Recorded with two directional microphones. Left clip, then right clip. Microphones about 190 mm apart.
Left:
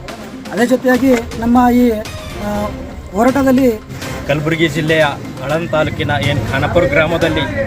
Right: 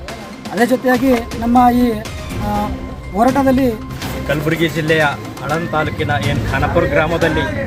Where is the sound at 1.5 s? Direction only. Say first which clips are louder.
Even; 15° left (ahead or behind).